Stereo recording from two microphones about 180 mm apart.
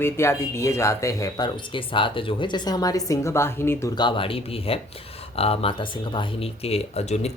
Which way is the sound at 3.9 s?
25° left (ahead or behind).